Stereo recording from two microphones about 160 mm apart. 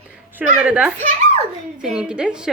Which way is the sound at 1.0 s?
50° right (ahead or behind).